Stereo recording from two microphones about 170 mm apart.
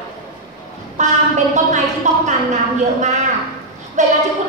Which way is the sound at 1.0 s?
45° right (ahead or behind).